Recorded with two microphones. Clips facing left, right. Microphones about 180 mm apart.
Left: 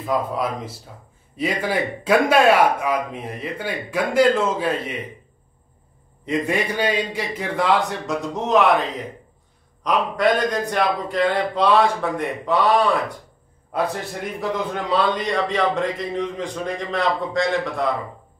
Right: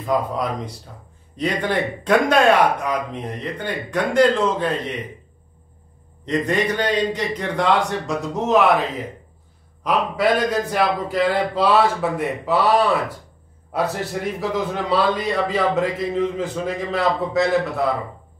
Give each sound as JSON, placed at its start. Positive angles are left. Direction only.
{"t": 0.0, "sound": "a man's voice", "side_deg": 0}
{"t": 6.2, "sound": "a man's voice", "side_deg": 10}
{"t": 14.0, "sound": "a man's voice", "side_deg": 0}